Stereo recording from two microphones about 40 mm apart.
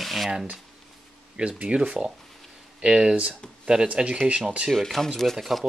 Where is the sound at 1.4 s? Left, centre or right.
Right.